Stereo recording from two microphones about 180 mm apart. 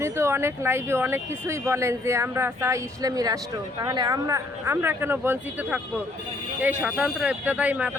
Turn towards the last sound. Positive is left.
turn(degrees=-10)  # may be behind; listen again after turning